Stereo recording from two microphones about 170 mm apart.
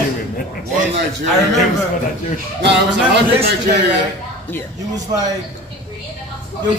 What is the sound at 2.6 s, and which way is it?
Speech, 85° right.